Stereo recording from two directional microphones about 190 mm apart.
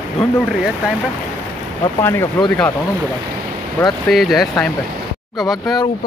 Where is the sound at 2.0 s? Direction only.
15° left (ahead or behind).